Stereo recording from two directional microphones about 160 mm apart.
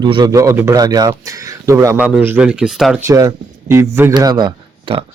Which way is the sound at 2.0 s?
10° right (ahead or behind).